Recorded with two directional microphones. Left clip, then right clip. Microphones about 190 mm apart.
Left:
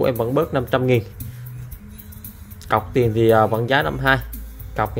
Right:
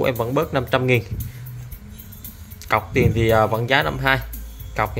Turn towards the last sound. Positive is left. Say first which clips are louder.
# even
turn(degrees=15)  # may be behind; listen again after turning